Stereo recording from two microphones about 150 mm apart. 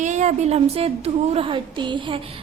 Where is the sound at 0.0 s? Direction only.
55° right (ahead or behind).